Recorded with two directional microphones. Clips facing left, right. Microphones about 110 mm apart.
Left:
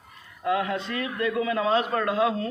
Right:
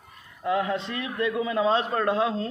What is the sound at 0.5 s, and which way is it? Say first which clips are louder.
A man's voice: right 1 dB; 25° right (ahead or behind).